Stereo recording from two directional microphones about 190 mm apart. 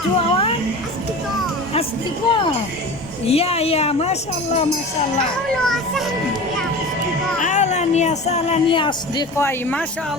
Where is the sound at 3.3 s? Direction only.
30° left (ahead or behind).